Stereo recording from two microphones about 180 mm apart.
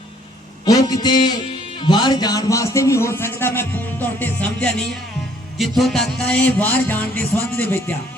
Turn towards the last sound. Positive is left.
turn(degrees=10)  # may be behind; listen again after turning